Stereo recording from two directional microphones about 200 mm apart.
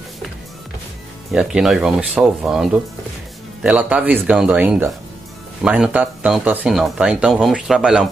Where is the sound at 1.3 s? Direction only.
5° right (ahead or behind).